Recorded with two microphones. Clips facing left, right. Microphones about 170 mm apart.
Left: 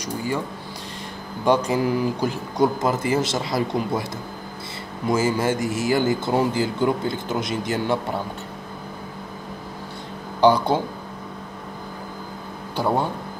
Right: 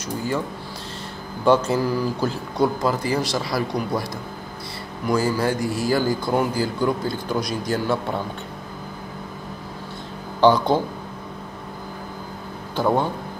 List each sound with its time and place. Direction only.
1.4 s a man's voice: 15° left (ahead or behind)
5.0 s a man's voice: 20° left (ahead or behind)
10.4 s speech: 10° left (ahead or behind)
12.7 s speech: 10° left (ahead or behind)